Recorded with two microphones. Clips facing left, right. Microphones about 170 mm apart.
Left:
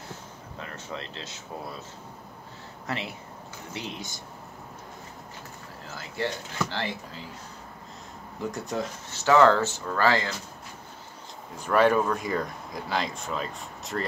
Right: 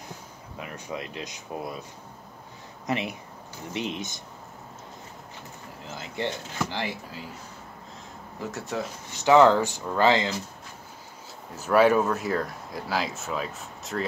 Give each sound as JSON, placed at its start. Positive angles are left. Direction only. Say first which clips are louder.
{"t": 0.6, "sound": "speech", "louder": "right 3 dB", "side_deg": -15}
{"t": 2.9, "sound": "speech", "louder": "right 5 dB", "side_deg": -20}
{"t": 5.9, "sound": "speech", "louder": "even", "side_deg": -20}
{"t": 8.5, "sound": "speech", "louder": "left 1 dB", "side_deg": 0}
{"t": 9.1, "sound": "speech", "louder": "right 2 dB", "side_deg": -15}
{"t": 11.5, "sound": "speech", "louder": "right 2 dB", "side_deg": -5}